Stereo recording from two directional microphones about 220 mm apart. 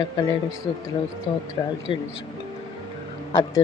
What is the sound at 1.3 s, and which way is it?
Speech, 25° left (ahead or behind).